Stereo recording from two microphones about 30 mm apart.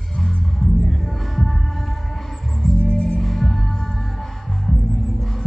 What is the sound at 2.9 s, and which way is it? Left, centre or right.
Music, left.